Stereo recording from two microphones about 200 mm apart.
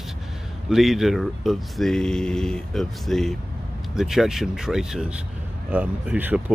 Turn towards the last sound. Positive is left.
turn(degrees=-5)  # may be behind; listen again after turning